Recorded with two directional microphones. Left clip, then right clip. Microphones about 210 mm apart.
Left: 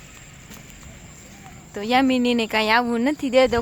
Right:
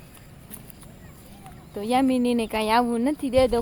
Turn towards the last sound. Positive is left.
turn(degrees=10)  # may be behind; listen again after turning